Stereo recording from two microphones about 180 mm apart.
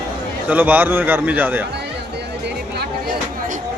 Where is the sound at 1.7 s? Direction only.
70° right (ahead or behind).